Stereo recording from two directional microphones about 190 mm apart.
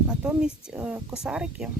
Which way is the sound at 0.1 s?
5° right (ahead or behind).